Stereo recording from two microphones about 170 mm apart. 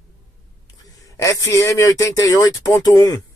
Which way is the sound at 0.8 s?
20° left (ahead or behind).